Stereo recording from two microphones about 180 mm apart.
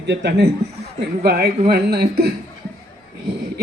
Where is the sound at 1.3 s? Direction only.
60° right (ahead or behind).